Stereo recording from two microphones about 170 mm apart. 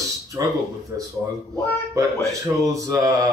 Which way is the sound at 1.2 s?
10° right (ahead or behind).